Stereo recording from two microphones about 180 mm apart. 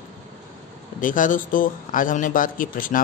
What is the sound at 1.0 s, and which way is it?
Speech, 45° left (ahead or behind).